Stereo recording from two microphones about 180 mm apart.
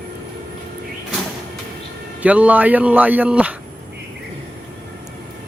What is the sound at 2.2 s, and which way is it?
Speech, 5° right (ahead or behind).